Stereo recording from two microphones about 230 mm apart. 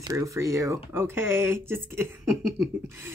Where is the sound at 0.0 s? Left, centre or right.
Centre.